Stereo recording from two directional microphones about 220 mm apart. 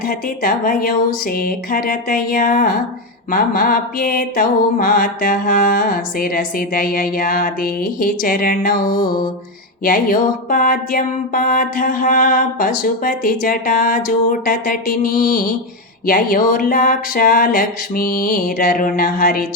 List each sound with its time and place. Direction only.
0.0 s mantra: 40° left (ahead or behind)